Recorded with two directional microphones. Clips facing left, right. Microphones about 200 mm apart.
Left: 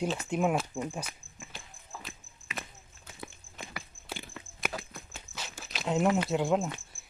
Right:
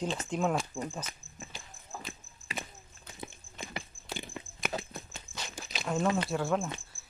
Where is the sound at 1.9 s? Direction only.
45° right (ahead or behind).